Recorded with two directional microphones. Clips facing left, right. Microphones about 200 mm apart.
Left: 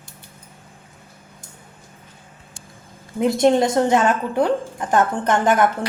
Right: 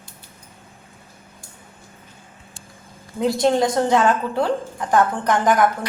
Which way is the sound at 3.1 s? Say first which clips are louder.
Left 2 dB; 20° left (ahead or behind).